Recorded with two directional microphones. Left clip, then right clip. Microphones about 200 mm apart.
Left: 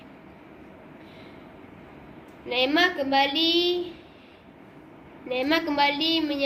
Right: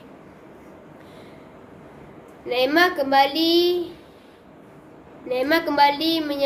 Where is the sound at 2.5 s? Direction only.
25° right (ahead or behind).